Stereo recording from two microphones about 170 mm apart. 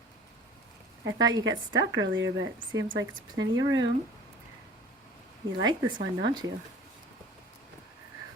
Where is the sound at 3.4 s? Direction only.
20° right (ahead or behind).